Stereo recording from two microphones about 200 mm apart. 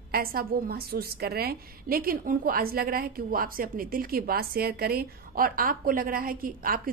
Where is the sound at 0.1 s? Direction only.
50° right (ahead or behind).